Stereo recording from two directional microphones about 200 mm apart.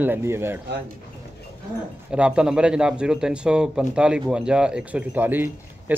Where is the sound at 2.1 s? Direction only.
5° right (ahead or behind).